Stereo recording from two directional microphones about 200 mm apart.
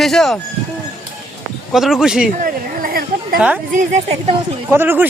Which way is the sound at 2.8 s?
45° right (ahead or behind).